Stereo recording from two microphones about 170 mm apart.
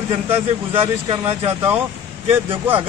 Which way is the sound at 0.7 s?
35° right (ahead or behind).